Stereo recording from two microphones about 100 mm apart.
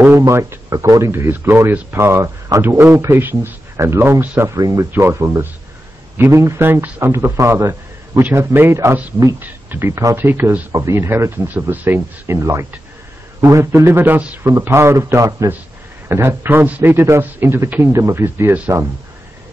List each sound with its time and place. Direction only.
0.2 s speech: 30° right (ahead or behind)
4.6 s speech: 40° right (ahead or behind)
4.9 s speech: 25° right (ahead or behind)
12.3 s speech: 30° right (ahead or behind)